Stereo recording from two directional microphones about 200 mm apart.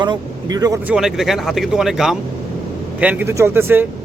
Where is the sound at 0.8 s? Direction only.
Centre (ahead or behind).